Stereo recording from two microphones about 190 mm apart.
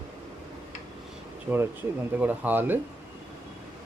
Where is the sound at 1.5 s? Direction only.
10° right (ahead or behind).